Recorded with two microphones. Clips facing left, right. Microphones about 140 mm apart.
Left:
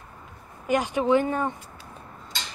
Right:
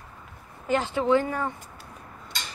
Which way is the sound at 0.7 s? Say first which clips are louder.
Left 1 dB; 15° left (ahead or behind).